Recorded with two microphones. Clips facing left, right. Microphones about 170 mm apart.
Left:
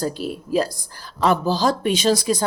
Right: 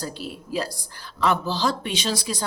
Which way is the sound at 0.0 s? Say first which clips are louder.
Left 7 dB; 45° left (ahead or behind).